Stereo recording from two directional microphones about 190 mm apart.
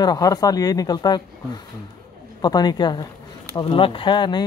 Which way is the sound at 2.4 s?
20° left (ahead or behind).